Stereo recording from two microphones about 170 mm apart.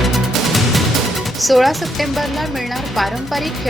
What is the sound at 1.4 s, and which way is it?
Speech, centre (ahead or behind).